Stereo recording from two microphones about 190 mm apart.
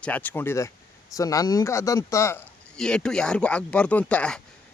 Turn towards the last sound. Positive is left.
turn(degrees=5)  # may be behind; listen again after turning